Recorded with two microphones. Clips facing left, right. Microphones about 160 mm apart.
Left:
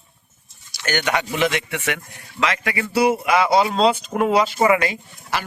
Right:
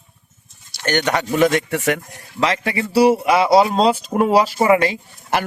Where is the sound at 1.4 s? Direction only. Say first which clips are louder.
Right 6 dB; 40° right (ahead or behind).